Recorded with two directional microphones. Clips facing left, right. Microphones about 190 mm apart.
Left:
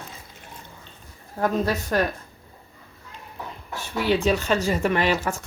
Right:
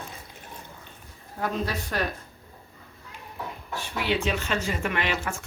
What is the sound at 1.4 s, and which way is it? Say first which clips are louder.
Speech: left 6 dB; 45° left (ahead or behind).